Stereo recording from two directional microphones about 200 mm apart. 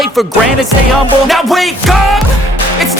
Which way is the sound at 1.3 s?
Centre (ahead or behind).